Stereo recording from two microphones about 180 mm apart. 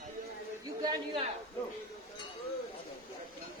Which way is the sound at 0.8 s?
25° right (ahead or behind).